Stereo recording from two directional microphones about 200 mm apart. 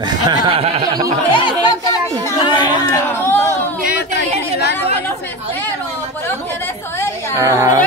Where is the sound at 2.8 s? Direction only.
15° left (ahead or behind).